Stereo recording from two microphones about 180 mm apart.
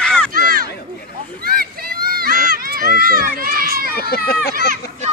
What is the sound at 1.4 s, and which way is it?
Speech, 55° right (ahead or behind).